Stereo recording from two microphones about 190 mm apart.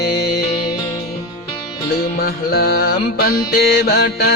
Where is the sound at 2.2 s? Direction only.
55° left (ahead or behind).